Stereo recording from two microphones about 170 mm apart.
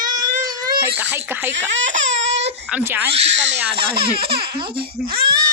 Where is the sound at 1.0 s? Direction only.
10° right (ahead or behind).